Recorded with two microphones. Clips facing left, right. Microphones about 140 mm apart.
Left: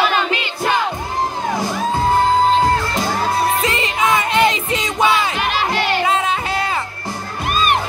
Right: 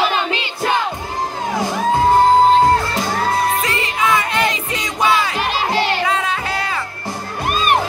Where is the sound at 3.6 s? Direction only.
20° left (ahead or behind).